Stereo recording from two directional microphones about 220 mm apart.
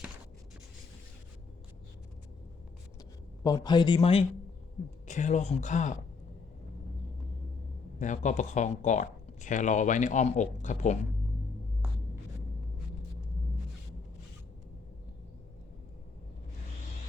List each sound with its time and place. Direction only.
3.4 s speech: 15° left (ahead or behind); by 6.0 s 35° left (ahead or behind)
7.9 s speech: 35° left (ahead or behind)